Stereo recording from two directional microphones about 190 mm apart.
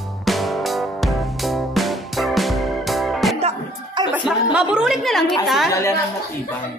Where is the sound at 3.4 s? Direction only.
25° right (ahead or behind).